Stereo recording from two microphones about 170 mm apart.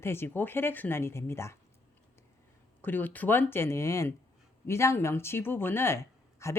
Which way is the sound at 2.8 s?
10° left (ahead or behind).